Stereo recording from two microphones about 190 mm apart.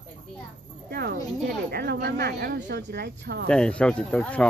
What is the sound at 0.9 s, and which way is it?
Speech, 55° right (ahead or behind).